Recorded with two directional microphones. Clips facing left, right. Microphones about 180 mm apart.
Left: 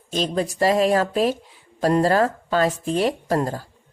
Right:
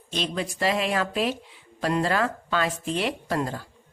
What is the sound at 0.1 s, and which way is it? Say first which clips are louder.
Speech: left 6 dB; 40° left (ahead or behind).